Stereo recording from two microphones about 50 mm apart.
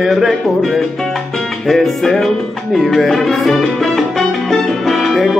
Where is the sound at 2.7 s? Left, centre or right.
Centre.